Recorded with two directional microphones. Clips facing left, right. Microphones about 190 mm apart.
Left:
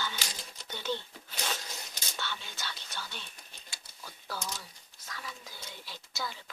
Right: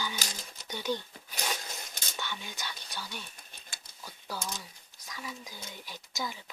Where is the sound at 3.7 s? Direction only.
50° right (ahead or behind).